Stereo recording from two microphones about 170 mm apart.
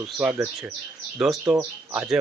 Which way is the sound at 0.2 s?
5° right (ahead or behind).